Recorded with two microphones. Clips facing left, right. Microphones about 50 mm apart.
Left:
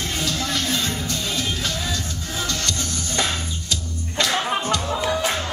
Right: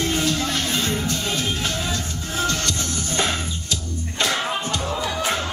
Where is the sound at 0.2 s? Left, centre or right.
Right.